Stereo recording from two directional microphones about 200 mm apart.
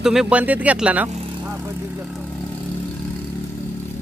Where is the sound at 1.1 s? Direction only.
35° right (ahead or behind).